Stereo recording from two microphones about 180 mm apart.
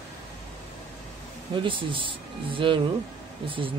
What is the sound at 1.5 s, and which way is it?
Speech, 30° right (ahead or behind).